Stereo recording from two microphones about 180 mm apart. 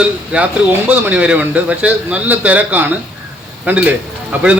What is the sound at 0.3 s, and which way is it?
Speech, 5° right (ahead or behind).